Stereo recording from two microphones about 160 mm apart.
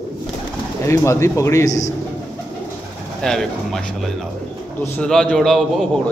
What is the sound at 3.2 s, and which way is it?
Speech, 5° left (ahead or behind).